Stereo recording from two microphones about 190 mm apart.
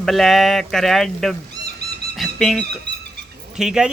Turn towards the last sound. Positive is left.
turn(degrees=-5)  # may be behind; listen again after turning